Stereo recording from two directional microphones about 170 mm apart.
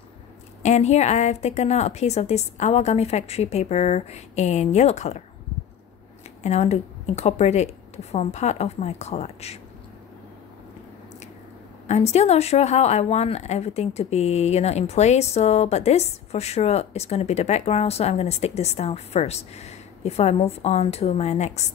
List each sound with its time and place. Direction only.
0.6 s speech: 40° left (ahead or behind)
6.4 s speech: 40° left (ahead or behind)
11.9 s speech: 40° left (ahead or behind)